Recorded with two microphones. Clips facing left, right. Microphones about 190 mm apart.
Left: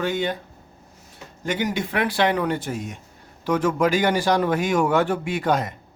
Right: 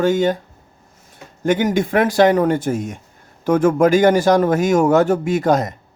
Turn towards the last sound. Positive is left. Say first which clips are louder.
# right 6 dB
turn(degrees=-45)  # may be behind; listen again after turning